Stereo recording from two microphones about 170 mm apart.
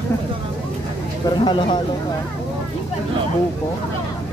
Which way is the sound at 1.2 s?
25° left (ahead or behind).